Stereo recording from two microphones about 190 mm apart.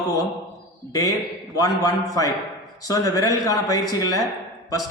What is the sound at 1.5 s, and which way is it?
A man's voice, 20° left (ahead or behind).